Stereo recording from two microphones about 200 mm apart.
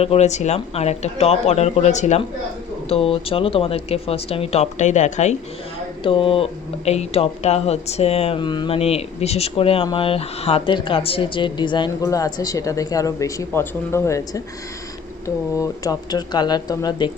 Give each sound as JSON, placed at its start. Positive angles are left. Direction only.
{"t": 0.0, "sound": "speech", "side_deg": 30}
{"t": 15.5, "sound": "speech", "side_deg": 15}